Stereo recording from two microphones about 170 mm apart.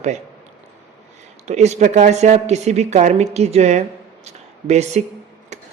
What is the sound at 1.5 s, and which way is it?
A woman's voice, 40° right (ahead or behind).